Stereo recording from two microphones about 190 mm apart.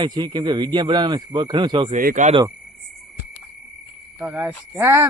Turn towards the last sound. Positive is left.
turn(degrees=-15)  # may be behind; listen again after turning